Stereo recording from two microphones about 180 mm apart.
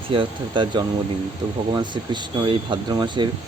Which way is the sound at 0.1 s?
25° right (ahead or behind).